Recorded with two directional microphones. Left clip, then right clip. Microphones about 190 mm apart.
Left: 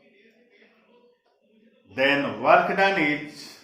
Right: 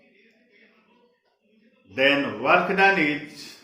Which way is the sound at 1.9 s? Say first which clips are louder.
Right 1 dB; 15° right (ahead or behind).